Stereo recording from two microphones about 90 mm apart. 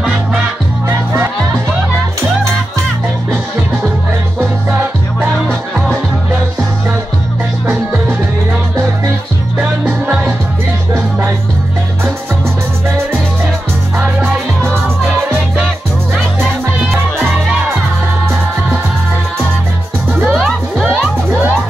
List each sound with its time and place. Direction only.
7.6 s music: 15° right (ahead or behind)
9.6 s music: 15° right (ahead or behind)
20.2 s music: centre (ahead or behind)